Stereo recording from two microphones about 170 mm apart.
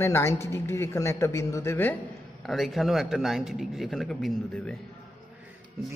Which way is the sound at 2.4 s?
Centre (ahead or behind).